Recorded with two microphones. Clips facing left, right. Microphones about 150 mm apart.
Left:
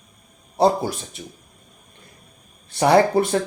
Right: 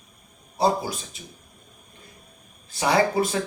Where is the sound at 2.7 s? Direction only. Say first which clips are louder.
Left 6 dB; 60° left (ahead or behind).